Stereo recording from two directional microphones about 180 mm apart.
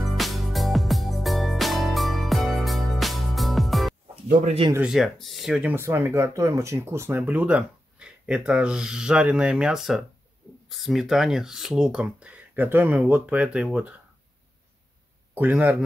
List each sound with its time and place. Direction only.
0.0 s music: centre (ahead or behind)
4.3 s speech: 40° right (ahead or behind)
4.7 s speech: 5° right (ahead or behind)
15.3 s speech: 10° right (ahead or behind)